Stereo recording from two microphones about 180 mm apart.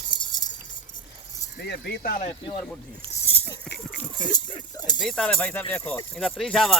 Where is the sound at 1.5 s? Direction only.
65° left (ahead or behind).